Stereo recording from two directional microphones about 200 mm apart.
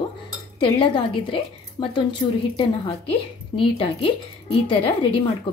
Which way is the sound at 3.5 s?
25° left (ahead or behind).